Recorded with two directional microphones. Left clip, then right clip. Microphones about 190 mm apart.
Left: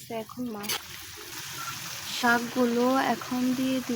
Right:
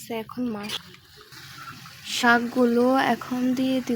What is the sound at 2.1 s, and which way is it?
Speech, 35° right (ahead or behind).